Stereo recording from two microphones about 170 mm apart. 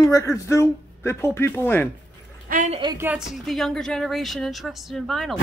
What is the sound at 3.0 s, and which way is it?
Speech, 5° right (ahead or behind).